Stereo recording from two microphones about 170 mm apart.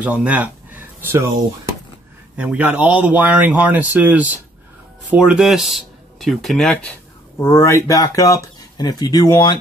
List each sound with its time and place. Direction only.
0.0 s a sound: 5° right (ahead or behind)
2.3 s a man's voice: 5° right (ahead or behind)
7.3 s speech: 15° left (ahead or behind)